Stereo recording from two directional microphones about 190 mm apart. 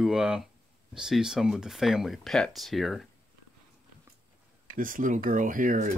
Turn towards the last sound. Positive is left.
turn(degrees=-45)  # may be behind; listen again after turning